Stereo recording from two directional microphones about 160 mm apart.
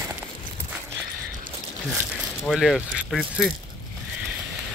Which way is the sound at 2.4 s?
Centre (ahead or behind).